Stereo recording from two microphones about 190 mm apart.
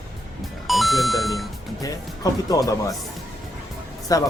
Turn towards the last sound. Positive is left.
turn(degrees=20)  # may be behind; listen again after turning